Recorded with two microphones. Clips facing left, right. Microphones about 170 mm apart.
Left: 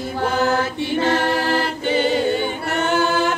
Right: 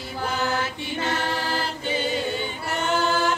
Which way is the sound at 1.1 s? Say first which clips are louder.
Left 6 dB; 70° left (ahead or behind).